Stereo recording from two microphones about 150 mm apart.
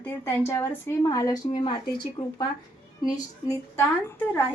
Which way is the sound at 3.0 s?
25° left (ahead or behind).